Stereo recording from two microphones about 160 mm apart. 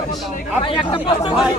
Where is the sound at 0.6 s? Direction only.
30° left (ahead or behind).